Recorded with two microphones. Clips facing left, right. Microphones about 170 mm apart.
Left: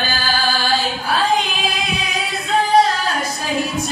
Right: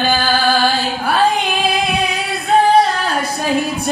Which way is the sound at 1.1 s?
60° right (ahead or behind).